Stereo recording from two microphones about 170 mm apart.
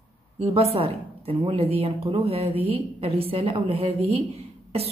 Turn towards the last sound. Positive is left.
turn(degrees=-35)  # may be behind; listen again after turning